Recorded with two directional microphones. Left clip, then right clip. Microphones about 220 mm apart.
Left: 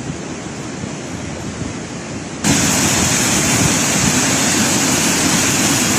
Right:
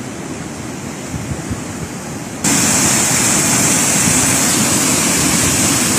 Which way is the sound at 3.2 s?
10° right (ahead or behind).